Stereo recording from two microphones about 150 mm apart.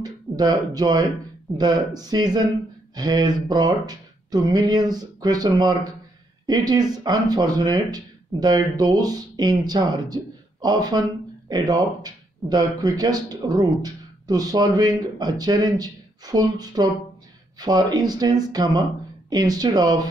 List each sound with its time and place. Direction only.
0.0 s speech: 25° right (ahead or behind)